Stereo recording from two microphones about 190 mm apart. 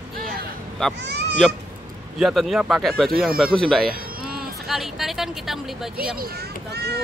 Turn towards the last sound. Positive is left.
turn(degrees=-55)  # may be behind; listen again after turning